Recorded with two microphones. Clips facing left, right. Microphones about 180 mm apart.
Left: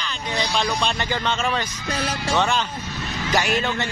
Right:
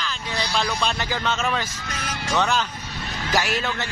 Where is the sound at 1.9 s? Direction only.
30° left (ahead or behind).